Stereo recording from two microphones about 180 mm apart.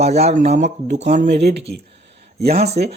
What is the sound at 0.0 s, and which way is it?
Speech, 35° right (ahead or behind).